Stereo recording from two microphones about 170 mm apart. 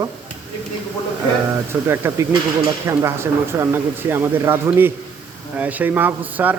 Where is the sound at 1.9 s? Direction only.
15° right (ahead or behind).